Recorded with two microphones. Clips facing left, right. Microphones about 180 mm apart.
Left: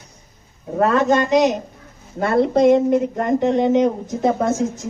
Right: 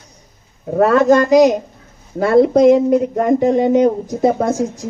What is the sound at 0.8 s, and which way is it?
Speech, centre (ahead or behind).